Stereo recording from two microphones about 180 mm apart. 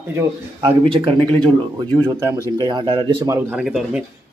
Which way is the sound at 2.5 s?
25° right (ahead or behind).